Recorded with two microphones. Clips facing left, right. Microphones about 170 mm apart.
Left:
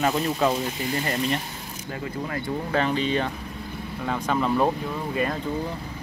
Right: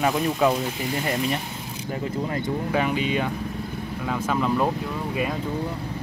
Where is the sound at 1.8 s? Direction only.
20° right (ahead or behind).